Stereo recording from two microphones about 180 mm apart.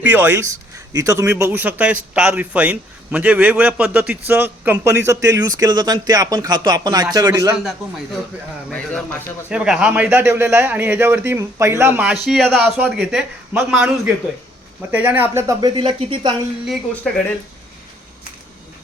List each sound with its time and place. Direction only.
0.0 s a man's voice: 10° right (ahead or behind)
7.5 s a man's voice: centre (ahead or behind)
15.8 s speech: 30° right (ahead or behind)
16.6 s speech: 5° left (ahead or behind)